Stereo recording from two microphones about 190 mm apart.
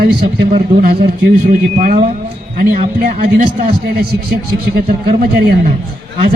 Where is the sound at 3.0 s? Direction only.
50° right (ahead or behind).